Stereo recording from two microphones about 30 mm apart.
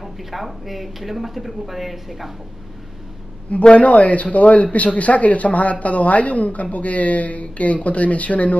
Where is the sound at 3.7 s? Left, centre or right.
Left.